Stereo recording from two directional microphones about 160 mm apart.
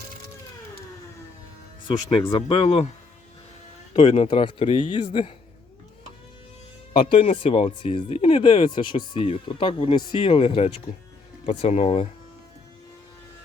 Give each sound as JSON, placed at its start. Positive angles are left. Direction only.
{"t": 1.9, "sound": "speech", "side_deg": 30}
{"t": 3.9, "sound": "speech", "side_deg": 35}
{"t": 6.9, "sound": "speech", "side_deg": 35}